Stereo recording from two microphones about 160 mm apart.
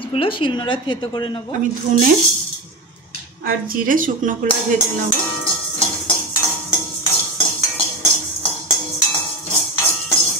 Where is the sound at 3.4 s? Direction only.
60° right (ahead or behind).